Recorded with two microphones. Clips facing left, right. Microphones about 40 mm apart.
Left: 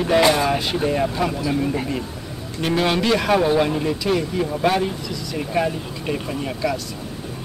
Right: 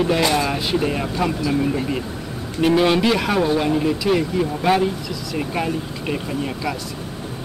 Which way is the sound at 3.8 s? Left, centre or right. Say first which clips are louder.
Right 2 dB; centre.